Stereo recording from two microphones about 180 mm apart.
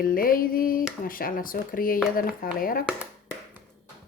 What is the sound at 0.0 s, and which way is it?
Speech, 50° left (ahead or behind).